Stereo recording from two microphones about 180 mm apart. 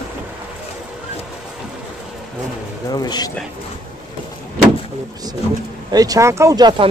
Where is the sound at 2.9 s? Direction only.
20° left (ahead or behind).